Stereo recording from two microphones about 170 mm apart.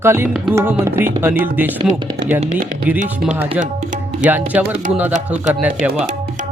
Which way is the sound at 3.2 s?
10° right (ahead or behind).